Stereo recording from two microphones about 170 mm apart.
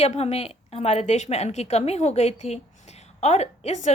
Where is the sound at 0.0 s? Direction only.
40° left (ahead or behind).